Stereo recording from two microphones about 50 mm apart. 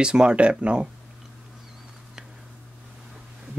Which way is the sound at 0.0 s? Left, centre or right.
Centre.